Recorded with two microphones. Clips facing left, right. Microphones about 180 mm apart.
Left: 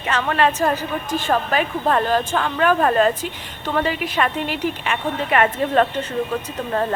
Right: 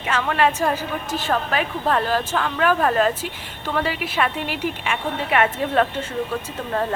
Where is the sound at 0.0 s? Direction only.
5° right (ahead or behind).